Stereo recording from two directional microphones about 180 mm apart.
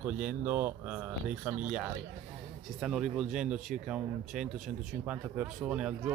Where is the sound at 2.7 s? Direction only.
Centre (ahead or behind).